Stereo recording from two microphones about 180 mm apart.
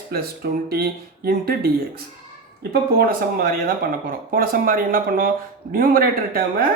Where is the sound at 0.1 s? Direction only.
60° right (ahead or behind).